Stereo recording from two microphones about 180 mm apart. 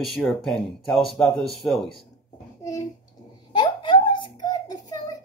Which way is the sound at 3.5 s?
25° left (ahead or behind).